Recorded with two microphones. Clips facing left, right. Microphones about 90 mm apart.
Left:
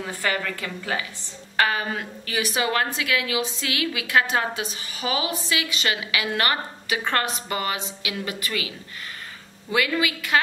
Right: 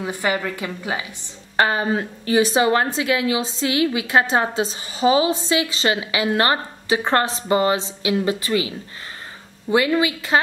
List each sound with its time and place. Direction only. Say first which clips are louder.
0.0 s a woman's voice: right 4 dB; 20° right (ahead or behind)
1.6 s a woman's voice: right 4 dB; 30° right (ahead or behind)